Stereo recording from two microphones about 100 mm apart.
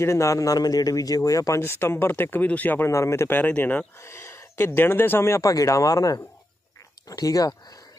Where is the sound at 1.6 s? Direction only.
25° left (ahead or behind).